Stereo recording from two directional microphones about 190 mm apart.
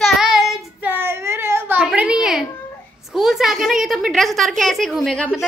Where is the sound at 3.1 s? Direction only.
Centre (ahead or behind).